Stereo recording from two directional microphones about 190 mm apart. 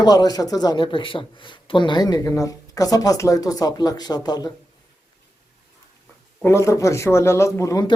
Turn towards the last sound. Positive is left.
turn(degrees=15)  # may be behind; listen again after turning